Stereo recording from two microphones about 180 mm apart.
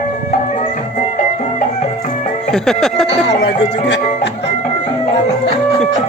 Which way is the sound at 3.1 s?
75° left (ahead or behind).